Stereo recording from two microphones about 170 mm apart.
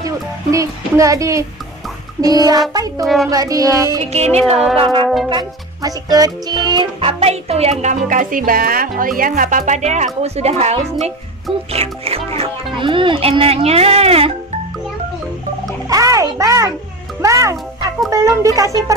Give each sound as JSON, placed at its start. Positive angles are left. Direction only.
{"t": 0.0, "sound": "speech", "side_deg": -20}
{"t": 2.2, "sound": "music", "side_deg": -20}
{"t": 4.1, "sound": "music", "side_deg": -40}
{"t": 5.0, "sound": "music", "side_deg": 0}
{"t": 5.3, "sound": "music", "side_deg": -20}
{"t": 7.8, "sound": "speech", "side_deg": -50}
{"t": 15.9, "sound": "a child's voice", "side_deg": -20}
{"t": 18.1, "sound": "music", "side_deg": -20}